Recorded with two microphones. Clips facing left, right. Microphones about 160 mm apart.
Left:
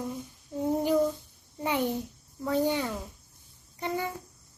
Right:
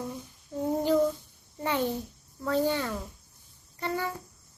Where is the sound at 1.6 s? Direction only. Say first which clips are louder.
Even; 15° left (ahead or behind).